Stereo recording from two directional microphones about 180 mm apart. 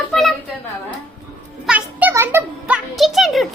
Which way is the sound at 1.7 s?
10° right (ahead or behind).